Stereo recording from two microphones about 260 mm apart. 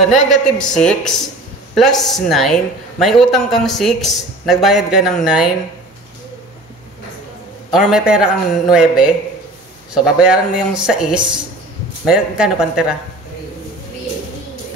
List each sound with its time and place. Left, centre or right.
0.0 s speech: centre
7.7 s speech: centre